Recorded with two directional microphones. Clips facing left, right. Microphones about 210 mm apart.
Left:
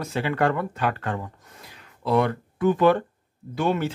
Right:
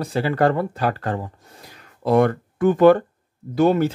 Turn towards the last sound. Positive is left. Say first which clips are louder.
# right 7 dB
turn(degrees=-40)  # may be behind; listen again after turning